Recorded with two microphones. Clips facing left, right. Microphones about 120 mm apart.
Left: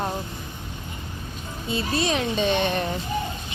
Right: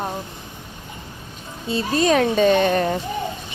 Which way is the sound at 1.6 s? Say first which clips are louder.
Right 6 dB; 40° right (ahead or behind).